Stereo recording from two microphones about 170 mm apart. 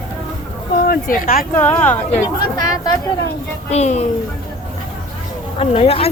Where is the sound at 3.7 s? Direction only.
40° left (ahead or behind).